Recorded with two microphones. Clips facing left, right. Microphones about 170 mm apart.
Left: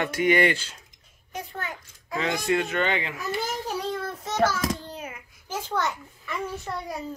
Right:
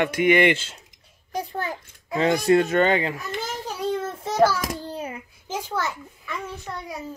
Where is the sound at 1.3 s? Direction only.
35° right (ahead or behind).